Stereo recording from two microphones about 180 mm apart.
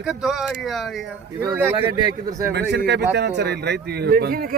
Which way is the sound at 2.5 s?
70° right (ahead or behind).